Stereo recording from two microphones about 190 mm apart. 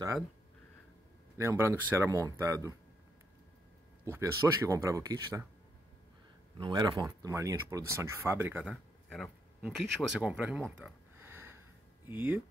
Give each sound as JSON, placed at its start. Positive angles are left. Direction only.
{"t": 1.4, "sound": "speech", "side_deg": -15}
{"t": 4.0, "sound": "speech", "side_deg": -15}
{"t": 6.6, "sound": "speech", "side_deg": -20}